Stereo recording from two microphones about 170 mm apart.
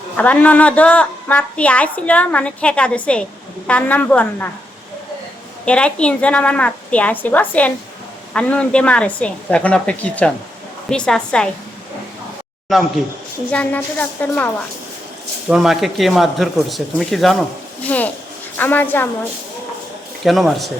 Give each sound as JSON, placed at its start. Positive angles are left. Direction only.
{"t": 0.2, "sound": "a woman's voice", "side_deg": 10}
{"t": 5.6, "sound": "a woman's voice", "side_deg": 5}
{"t": 13.5, "sound": "a woman's voice", "side_deg": 10}
{"t": 15.4, "sound": "a woman's voice", "side_deg": 0}
{"t": 20.2, "sound": "speech", "side_deg": 0}